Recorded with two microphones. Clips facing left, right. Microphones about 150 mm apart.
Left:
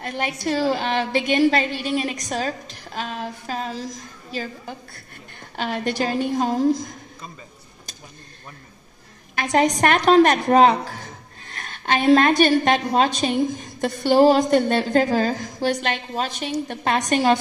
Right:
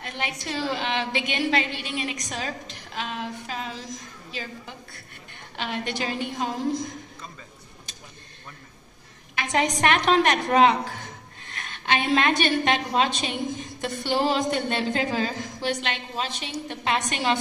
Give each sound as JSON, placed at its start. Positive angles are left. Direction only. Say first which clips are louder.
{"t": 0.0, "sound": "a woman's voice", "louder": "left 7 dB", "side_deg": 40}
{"t": 9.3, "sound": "a woman's voice", "louder": "left 6 dB", "side_deg": 40}